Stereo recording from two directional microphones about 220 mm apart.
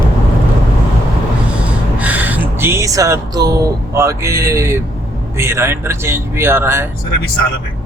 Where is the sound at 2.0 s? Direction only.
5° right (ahead or behind).